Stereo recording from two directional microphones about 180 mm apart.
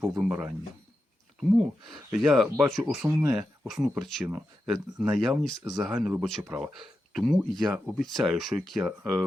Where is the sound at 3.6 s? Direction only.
5° right (ahead or behind).